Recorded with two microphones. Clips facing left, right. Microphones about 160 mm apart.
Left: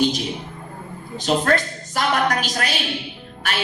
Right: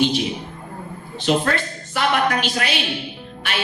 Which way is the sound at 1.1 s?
40° left (ahead or behind).